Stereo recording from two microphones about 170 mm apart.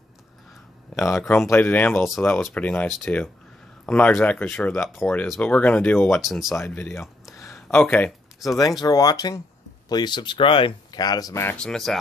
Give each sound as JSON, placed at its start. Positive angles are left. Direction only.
{"t": 0.9, "sound": "speech", "side_deg": 20}
{"t": 1.2, "sound": "speech", "side_deg": 0}
{"t": 6.6, "sound": "speech", "side_deg": 15}
{"t": 7.3, "sound": "a sound", "side_deg": 15}
{"t": 7.6, "sound": "speech", "side_deg": 10}
{"t": 8.5, "sound": "speech", "side_deg": 20}